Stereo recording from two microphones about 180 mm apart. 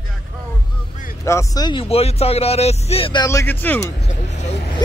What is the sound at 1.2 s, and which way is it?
Speech, 15° left (ahead or behind).